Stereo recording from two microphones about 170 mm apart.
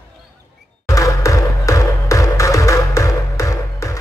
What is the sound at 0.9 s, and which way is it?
Music, 20° left (ahead or behind).